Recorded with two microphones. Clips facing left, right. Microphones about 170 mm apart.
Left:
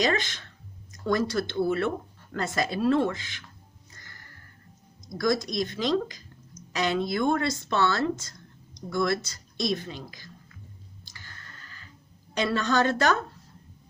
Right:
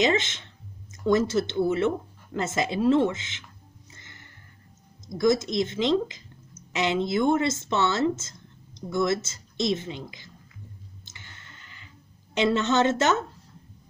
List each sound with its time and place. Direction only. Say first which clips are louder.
0.0 s speech: right 3 dB; 20° right (ahead or behind)
3.9 s music: even; 20° right (ahead or behind)
5.0 s speech: right 4 dB; 20° right (ahead or behind)
11.1 s clicking: even; 20° right (ahead or behind)
12.4 s speech: right 3 dB; 20° right (ahead or behind)